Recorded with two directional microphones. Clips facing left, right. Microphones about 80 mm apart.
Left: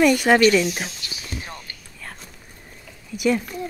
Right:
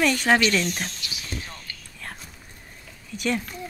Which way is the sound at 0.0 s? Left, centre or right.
Centre.